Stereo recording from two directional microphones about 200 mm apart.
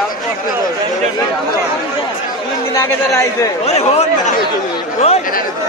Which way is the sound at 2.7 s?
15° left (ahead or behind).